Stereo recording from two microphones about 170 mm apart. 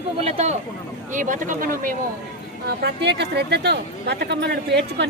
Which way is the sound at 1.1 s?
50° right (ahead or behind).